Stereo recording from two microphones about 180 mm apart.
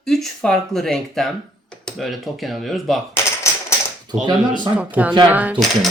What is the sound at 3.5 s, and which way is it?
Typewriter, 15° left (ahead or behind).